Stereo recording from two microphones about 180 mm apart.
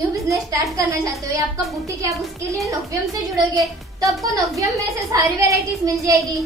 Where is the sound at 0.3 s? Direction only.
20° right (ahead or behind).